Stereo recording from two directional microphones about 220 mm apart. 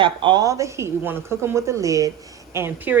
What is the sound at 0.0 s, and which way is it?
Speech, 20° right (ahead or behind).